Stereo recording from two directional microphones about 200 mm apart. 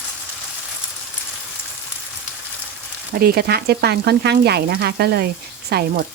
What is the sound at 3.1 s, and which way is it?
Speech, 50° right (ahead or behind).